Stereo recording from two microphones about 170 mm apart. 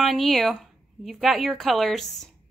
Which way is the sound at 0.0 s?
Centre (ahead or behind).